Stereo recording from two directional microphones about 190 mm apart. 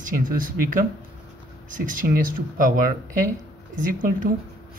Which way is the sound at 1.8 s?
45° right (ahead or behind).